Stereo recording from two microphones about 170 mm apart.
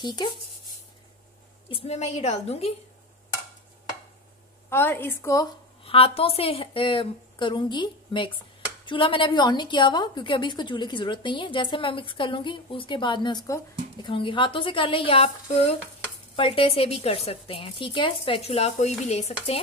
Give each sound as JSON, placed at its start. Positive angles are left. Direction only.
{"t": 0.0, "sound": "a woman's voice", "side_deg": 25}
{"t": 1.7, "sound": "a woman's voice", "side_deg": 35}
{"t": 4.6, "sound": "a woman's voice", "side_deg": 15}
{"t": 5.9, "sound": "a woman's voice", "side_deg": 35}